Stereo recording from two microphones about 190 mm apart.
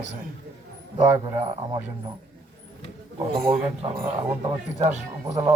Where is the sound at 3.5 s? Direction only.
30° right (ahead or behind).